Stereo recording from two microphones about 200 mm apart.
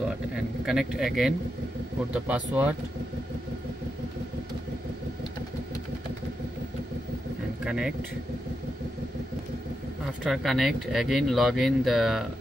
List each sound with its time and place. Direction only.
0.7 s speech: 5° right (ahead or behind)
7.6 s speech: 5° right (ahead or behind)
10.2 s speech: centre (ahead or behind)